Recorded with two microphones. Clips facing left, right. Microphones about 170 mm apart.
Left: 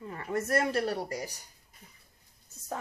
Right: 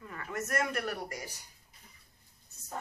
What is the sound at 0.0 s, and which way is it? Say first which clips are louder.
Speech: left 6 dB; 30° left (ahead or behind).